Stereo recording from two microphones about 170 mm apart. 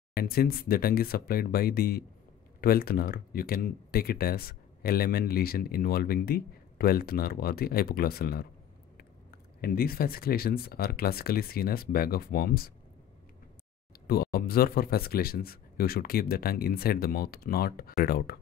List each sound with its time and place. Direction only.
0.1 s speech: 65° left (ahead or behind)
9.6 s speech: 60° left (ahead or behind)
14.0 s speech: 65° left (ahead or behind)